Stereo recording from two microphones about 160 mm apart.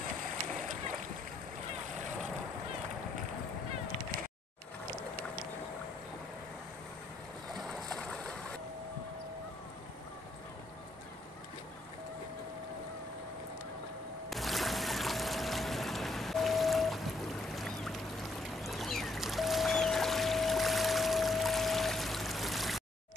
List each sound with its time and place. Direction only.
0.5 s boat: 50° right (ahead or behind)
7.5 s boat: 5° left (ahead or behind)
14.3 s boat: centre (ahead or behind)
18.6 s music: centre (ahead or behind)